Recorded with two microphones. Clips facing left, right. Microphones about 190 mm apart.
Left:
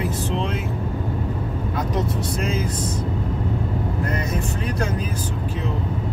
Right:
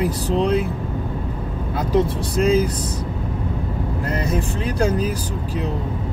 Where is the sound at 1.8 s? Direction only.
30° right (ahead or behind).